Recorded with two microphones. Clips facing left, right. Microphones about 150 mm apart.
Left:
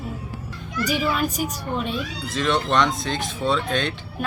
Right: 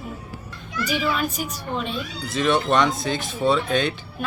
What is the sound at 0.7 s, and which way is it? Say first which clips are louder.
Speech: left 1 dB; 45° left (ahead or behind).